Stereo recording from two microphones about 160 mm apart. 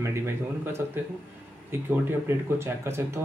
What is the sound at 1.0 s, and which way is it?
A man's voice, 15° right (ahead or behind).